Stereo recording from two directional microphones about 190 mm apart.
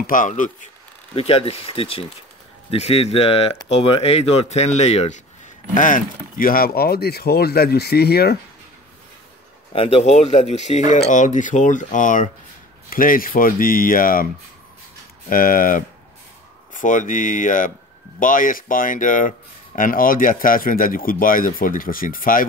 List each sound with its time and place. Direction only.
0.0 s speech: 45° left (ahead or behind)
1.1 s speech: 30° left (ahead or behind); by 8.4 s 55° left (ahead or behind)
9.7 s speech: 30° left (ahead or behind); by 14.2 s 50° left (ahead or behind)
15.2 s speech: 50° left (ahead or behind)